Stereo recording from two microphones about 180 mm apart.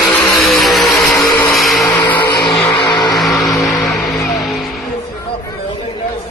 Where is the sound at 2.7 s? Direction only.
25° left (ahead or behind).